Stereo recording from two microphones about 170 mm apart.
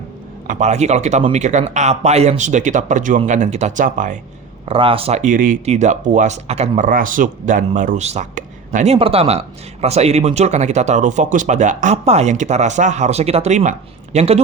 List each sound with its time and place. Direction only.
0.4 s speech: 45° right (ahead or behind)
4.6 s speech: 30° right (ahead or behind)